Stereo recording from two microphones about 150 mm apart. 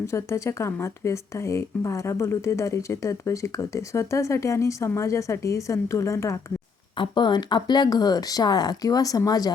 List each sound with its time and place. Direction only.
0.1 s speech: 20° left (ahead or behind)
6.9 s speech: 30° left (ahead or behind)